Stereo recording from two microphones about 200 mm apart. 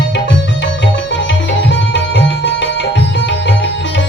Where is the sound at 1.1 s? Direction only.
65° left (ahead or behind).